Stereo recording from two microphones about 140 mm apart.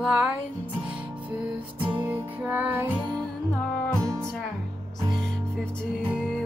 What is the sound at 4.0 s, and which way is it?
Music, 20° right (ahead or behind).